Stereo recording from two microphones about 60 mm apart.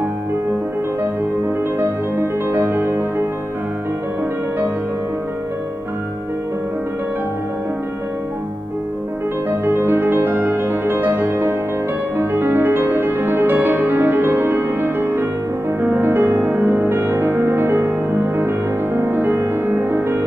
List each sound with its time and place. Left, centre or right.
1.8 s music: right
9.5 s music: right